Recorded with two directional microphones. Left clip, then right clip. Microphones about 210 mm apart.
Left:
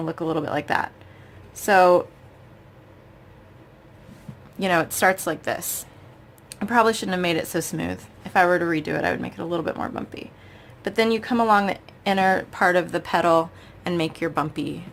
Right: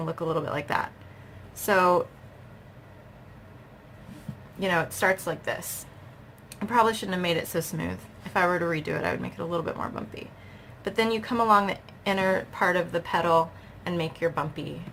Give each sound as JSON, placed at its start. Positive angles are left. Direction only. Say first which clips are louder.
{"t": 0.0, "sound": "speech", "louder": "left 3 dB", "side_deg": 35}
{"t": 4.6, "sound": "a woman's voice", "louder": "left 5 dB", "side_deg": 45}